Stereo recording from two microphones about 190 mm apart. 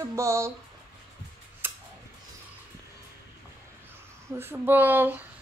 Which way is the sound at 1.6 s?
10° right (ahead or behind).